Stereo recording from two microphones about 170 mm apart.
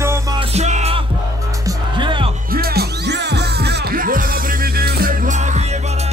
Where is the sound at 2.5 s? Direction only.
65° right (ahead or behind); by 5.6 s 50° right (ahead or behind).